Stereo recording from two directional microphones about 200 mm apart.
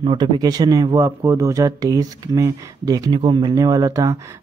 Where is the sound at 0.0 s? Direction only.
25° right (ahead or behind).